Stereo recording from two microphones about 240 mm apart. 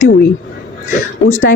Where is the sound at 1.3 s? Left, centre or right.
Left.